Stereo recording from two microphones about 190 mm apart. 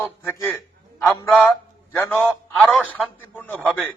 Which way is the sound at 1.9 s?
10° left (ahead or behind).